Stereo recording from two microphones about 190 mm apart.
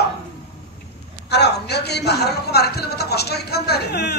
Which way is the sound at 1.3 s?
60° left (ahead or behind).